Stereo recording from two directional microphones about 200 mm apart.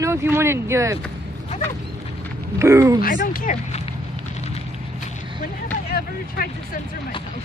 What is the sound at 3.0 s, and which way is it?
Speech, 45° left (ahead or behind).